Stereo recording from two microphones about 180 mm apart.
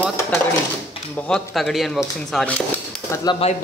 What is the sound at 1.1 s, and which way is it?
Speech, 5° left (ahead or behind).